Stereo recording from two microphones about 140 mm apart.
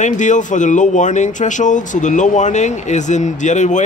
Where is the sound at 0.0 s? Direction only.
60° left (ahead or behind).